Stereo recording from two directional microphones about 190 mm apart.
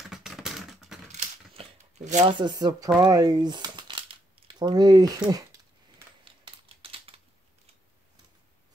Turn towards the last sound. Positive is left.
turn(degrees=-30)  # may be behind; listen again after turning